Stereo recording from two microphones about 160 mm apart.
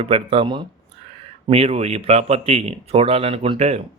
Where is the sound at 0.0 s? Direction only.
35° right (ahead or behind).